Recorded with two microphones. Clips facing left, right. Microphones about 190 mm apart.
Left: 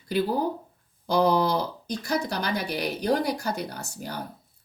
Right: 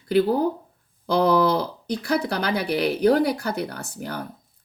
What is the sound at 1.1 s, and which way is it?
Speech, 60° right (ahead or behind).